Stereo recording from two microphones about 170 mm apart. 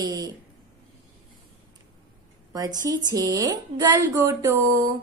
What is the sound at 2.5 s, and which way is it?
A woman's voice, 20° right (ahead or behind).